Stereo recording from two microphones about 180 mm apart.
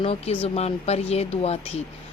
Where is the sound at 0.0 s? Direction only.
35° left (ahead or behind).